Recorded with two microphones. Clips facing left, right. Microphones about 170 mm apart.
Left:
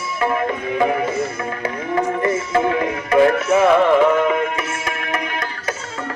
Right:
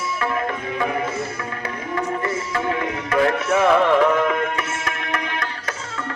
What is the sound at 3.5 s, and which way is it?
Music, 5° left (ahead or behind).